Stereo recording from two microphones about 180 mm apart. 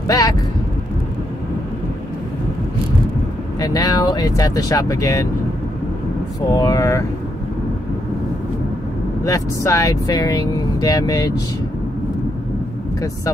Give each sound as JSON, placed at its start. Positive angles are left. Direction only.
{"t": 3.5, "sound": "speech", "side_deg": 20}
{"t": 6.5, "sound": "speech", "side_deg": 20}
{"t": 9.2, "sound": "speech", "side_deg": 15}